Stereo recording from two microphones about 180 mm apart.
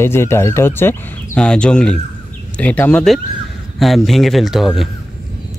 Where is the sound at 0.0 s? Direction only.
15° left (ahead or behind).